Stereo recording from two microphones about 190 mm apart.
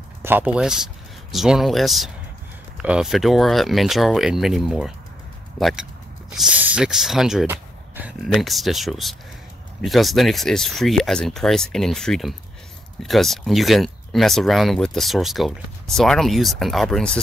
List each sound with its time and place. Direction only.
0.2 s speech: 10° right (ahead or behind)
7.5 s a sound: 10° right (ahead or behind)
8.2 s speech: centre (ahead or behind)